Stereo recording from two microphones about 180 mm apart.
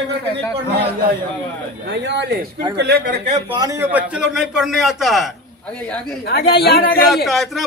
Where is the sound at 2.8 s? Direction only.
55° right (ahead or behind).